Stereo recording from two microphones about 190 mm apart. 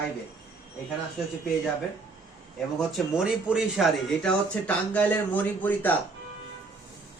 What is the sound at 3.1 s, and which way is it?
Speech, centre (ahead or behind).